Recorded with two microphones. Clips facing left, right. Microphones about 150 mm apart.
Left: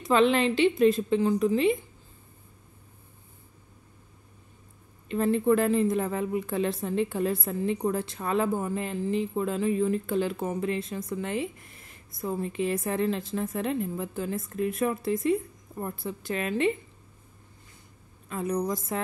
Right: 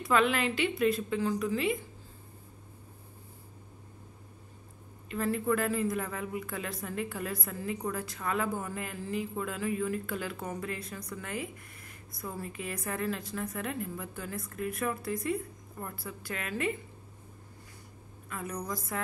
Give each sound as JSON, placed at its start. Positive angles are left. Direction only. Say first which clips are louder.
{"t": 0.0, "sound": "a woman's voice", "louder": "left 5 dB", "side_deg": 25}
{"t": 5.0, "sound": "a woman's voice", "louder": "left 7 dB", "side_deg": 25}
{"t": 18.3, "sound": "a woman's voice", "louder": "left 8 dB", "side_deg": 25}